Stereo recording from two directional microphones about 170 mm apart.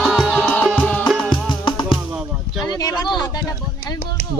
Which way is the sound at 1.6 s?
30° left (ahead or behind).